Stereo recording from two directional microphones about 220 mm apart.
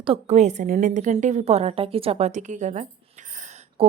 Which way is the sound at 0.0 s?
30° right (ahead or behind).